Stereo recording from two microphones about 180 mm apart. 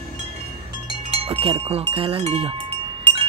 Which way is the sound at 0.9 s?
30° right (ahead or behind).